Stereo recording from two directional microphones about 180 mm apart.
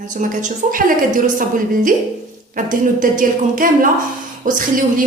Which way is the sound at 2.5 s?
50° right (ahead or behind).